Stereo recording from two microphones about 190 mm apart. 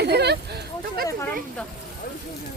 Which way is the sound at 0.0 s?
60° right (ahead or behind).